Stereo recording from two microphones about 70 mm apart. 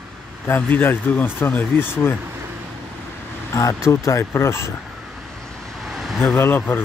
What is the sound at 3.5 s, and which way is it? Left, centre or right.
Speech, left.